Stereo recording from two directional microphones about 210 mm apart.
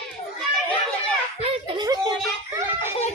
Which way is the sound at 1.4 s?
20° right (ahead or behind).